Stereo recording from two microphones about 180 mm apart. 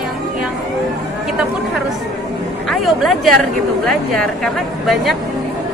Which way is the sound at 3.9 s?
Centre (ahead or behind).